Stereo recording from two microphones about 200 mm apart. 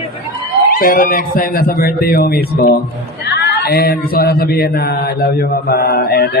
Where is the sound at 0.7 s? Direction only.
45° left (ahead or behind).